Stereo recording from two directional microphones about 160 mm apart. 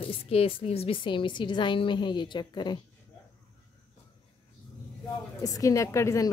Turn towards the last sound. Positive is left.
turn(degrees=20)  # may be behind; listen again after turning